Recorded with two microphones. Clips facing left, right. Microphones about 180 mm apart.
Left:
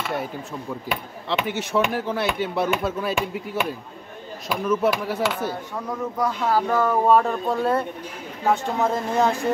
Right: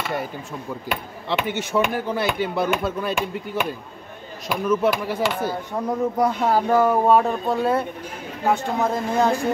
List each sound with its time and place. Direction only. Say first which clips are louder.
1.3 s speech: right 1 dB; centre (ahead or behind)
5.9 s speech: right 5 dB; 25° right (ahead or behind)
6.7 s speech: right 2 dB; 10° right (ahead or behind)